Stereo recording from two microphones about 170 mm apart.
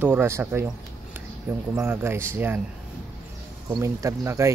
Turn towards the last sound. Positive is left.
turn(degrees=-15)  # may be behind; listen again after turning